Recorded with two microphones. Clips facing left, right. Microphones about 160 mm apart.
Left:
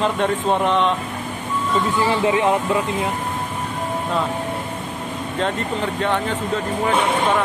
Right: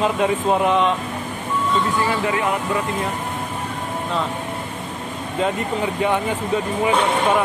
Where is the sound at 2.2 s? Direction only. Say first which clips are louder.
Left 4 dB; 25° left (ahead or behind).